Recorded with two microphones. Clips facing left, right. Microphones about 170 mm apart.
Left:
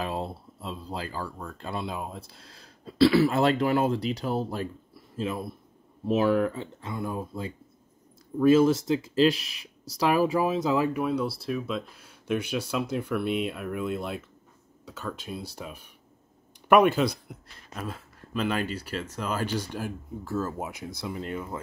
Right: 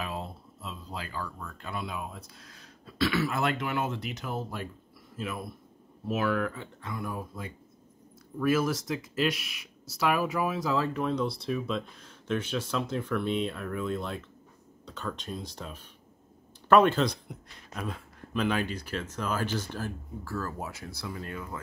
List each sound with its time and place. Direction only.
0.0 s speech: 35° left (ahead or behind)